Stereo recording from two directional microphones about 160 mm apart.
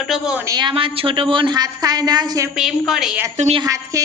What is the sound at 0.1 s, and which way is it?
Speech, 5° right (ahead or behind).